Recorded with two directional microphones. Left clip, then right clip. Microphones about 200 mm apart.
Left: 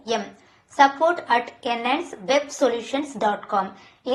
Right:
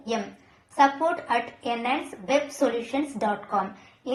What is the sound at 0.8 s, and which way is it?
A woman's voice, 20° left (ahead or behind).